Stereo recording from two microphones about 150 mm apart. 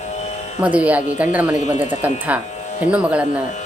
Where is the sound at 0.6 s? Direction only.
10° right (ahead or behind).